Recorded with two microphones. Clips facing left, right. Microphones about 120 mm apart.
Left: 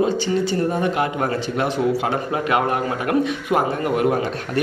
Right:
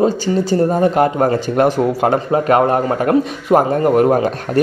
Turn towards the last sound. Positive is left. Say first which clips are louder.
# right 7 dB
turn(degrees=-40)  # may be behind; listen again after turning